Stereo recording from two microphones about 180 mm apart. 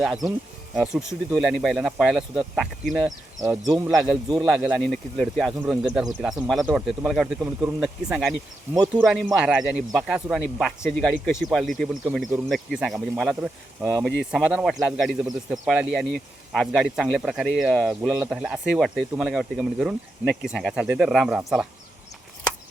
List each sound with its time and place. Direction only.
0.8 s speech: centre (ahead or behind)
3.4 s speech: 20° right (ahead or behind)